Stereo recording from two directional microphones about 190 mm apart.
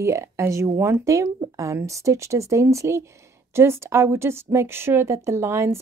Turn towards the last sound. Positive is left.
turn(degrees=-15)  # may be behind; listen again after turning